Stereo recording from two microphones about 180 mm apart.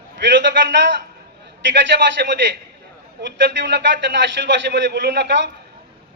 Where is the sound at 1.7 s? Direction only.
70° right (ahead or behind).